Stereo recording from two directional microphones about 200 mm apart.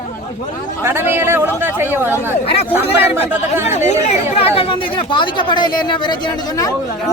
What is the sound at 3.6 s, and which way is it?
A man's voice, 35° left (ahead or behind).